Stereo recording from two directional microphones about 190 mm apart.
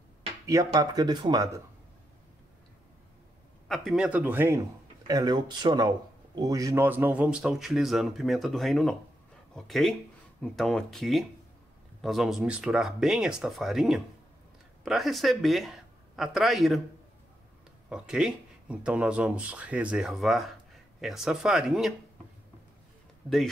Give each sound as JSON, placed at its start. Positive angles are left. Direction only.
{"t": 0.5, "sound": "speech", "side_deg": -20}
{"t": 3.6, "sound": "speech", "side_deg": 0}
{"t": 17.8, "sound": "speech", "side_deg": -5}
{"t": 23.2, "sound": "speech", "side_deg": -10}